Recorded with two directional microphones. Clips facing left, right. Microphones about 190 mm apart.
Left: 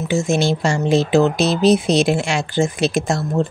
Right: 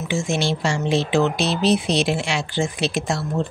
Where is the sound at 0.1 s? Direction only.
45° left (ahead or behind).